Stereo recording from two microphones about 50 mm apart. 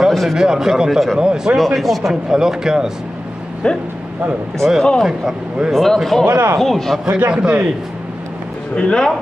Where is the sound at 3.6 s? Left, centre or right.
Centre.